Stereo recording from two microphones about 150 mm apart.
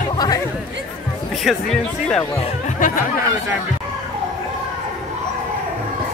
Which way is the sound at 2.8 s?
65° left (ahead or behind).